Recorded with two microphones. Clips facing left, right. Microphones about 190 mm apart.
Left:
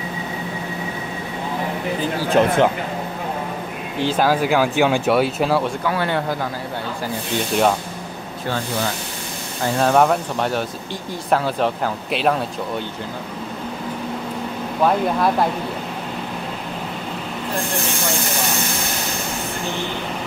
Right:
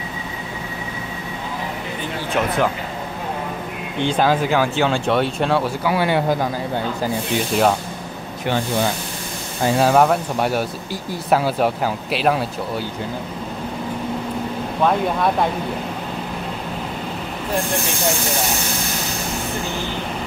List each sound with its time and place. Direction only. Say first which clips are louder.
2.0 s speech: left 6 dB; 35° left (ahead or behind)
4.0 s speech: even; 5° left (ahead or behind)
5.9 s speech: right 3 dB; 10° right (ahead or behind)
9.8 s speech: even; 5° right (ahead or behind)
14.8 s speech: left 1 dB; centre (ahead or behind)